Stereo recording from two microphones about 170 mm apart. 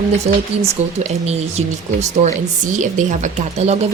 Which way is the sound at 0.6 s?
40° right (ahead or behind).